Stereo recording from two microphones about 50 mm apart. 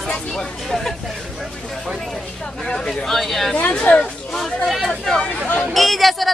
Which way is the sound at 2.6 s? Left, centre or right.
Centre.